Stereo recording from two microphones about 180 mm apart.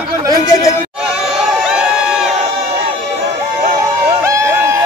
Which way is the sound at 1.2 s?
Centre (ahead or behind).